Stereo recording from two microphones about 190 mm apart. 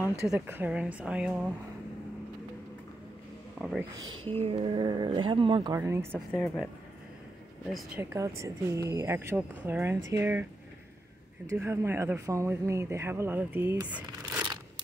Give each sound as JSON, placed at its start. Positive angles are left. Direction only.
{"t": 0.3, "sound": "speech", "side_deg": -10}
{"t": 3.5, "sound": "speech", "side_deg": 0}
{"t": 4.4, "sound": "speech", "side_deg": -30}
{"t": 5.8, "sound": "speech", "side_deg": -15}
{"t": 6.3, "sound": "speech", "side_deg": 10}
{"t": 8.0, "sound": "speech", "side_deg": -15}
{"t": 11.4, "sound": "speech", "side_deg": -15}
{"t": 13.8, "sound": "a sound", "side_deg": -10}